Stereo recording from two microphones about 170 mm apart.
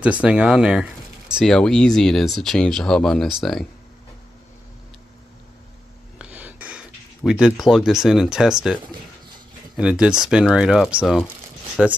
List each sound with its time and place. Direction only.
0.0 s speech: 5° right (ahead or behind)
6.1 s a sound: 10° right (ahead or behind)
7.6 s speech: centre (ahead or behind)
9.8 s speech: 5° right (ahead or behind)